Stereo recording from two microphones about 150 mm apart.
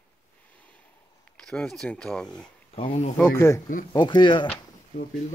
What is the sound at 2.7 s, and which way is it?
Speech, 50° left (ahead or behind).